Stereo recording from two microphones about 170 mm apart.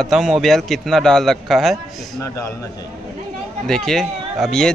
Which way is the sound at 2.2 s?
15° left (ahead or behind).